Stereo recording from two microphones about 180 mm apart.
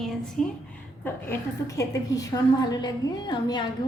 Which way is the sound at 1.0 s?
15° left (ahead or behind).